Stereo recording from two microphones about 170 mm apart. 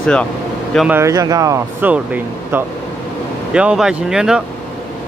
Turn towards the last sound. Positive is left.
turn(degrees=-5)  # may be behind; listen again after turning